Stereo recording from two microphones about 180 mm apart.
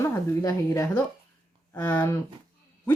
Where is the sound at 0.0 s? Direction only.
15° left (ahead or behind).